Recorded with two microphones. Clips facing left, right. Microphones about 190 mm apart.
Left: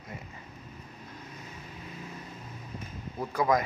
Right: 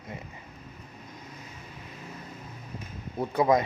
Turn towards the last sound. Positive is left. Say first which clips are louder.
# right 3 dB
turn(degrees=-25)  # may be behind; listen again after turning